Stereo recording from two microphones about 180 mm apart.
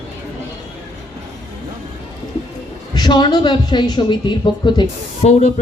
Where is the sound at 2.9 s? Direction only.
25° left (ahead or behind).